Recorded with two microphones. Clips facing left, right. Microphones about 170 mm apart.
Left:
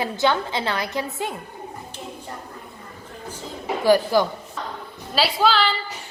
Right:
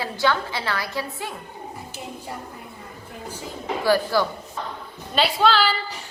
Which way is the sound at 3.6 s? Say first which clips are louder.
Left 3 dB; 15° left (ahead or behind).